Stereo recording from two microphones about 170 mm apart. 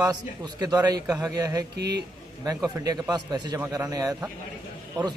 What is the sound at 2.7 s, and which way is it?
A man's voice, 25° right (ahead or behind).